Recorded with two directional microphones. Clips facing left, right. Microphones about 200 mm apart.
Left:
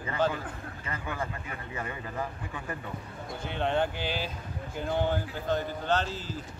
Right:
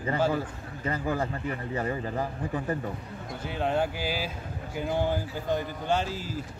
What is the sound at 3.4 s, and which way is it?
Speech, 5° right (ahead or behind).